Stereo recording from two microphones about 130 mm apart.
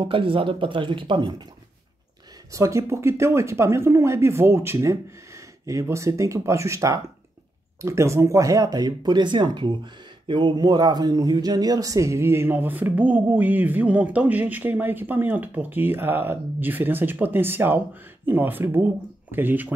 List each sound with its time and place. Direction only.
0.0 s speech: 40° right (ahead or behind)
2.5 s speech: 25° right (ahead or behind)